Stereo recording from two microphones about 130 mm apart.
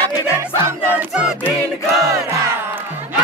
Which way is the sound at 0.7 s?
15° right (ahead or behind).